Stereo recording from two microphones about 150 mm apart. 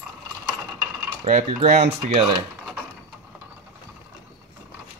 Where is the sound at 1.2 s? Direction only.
50° right (ahead or behind).